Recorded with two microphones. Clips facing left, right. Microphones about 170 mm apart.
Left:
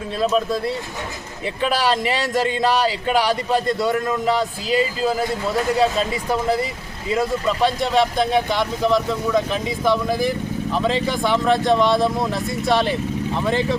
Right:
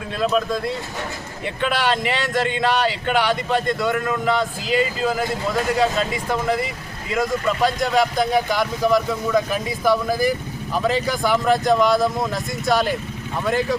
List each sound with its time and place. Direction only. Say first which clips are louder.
0.3 s speech: even; 5° left (ahead or behind)
1.6 s speech: left 1 dB; 35° left (ahead or behind)
7.9 s speech: left 1 dB; centre (ahead or behind)